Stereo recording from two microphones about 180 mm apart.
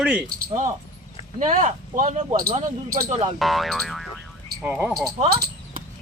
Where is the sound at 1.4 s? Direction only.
45° right (ahead or behind).